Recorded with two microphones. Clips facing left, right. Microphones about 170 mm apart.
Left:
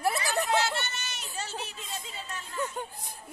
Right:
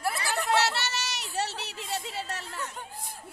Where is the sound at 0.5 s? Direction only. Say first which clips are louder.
Right 2 dB; 70° right (ahead or behind).